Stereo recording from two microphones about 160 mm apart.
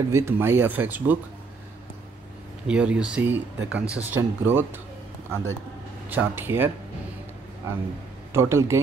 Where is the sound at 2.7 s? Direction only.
5° right (ahead or behind).